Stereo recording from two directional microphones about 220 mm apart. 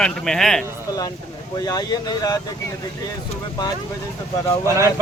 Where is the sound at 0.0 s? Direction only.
Centre (ahead or behind).